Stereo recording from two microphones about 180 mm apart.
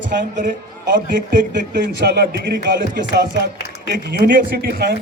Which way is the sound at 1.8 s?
70° right (ahead or behind).